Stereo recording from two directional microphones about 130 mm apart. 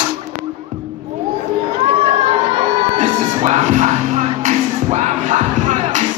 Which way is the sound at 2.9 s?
70° right (ahead or behind).